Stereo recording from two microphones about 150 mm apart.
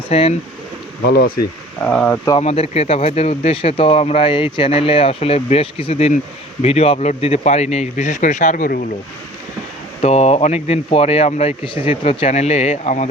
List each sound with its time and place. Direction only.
0.1 s speech: 40° left (ahead or behind)
1.0 s speech: 90° left
1.8 s speech: 10° left (ahead or behind)
2.4 s speech: 45° left (ahead or behind); by 8.9 s 70° left (ahead or behind)
10.0 s speech: 45° left (ahead or behind)